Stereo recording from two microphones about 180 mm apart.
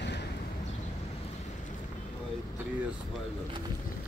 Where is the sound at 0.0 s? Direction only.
70° left (ahead or behind).